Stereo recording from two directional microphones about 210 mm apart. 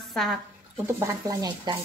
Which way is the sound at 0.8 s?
15° right (ahead or behind).